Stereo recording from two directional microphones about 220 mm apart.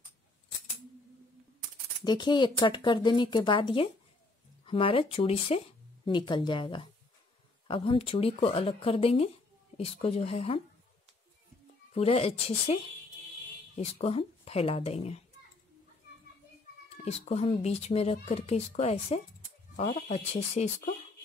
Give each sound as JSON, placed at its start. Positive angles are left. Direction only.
{"t": 2.0, "sound": "speech", "side_deg": 20}
{"t": 11.9, "sound": "speech", "side_deg": 25}
{"t": 13.7, "sound": "speech", "side_deg": 25}
{"t": 16.9, "sound": "speech", "side_deg": 30}